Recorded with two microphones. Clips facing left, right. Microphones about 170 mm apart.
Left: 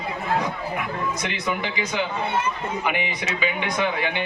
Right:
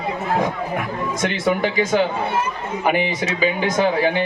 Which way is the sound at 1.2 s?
45° right (ahead or behind).